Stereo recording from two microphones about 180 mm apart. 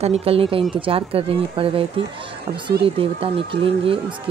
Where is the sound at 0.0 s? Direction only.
35° right (ahead or behind).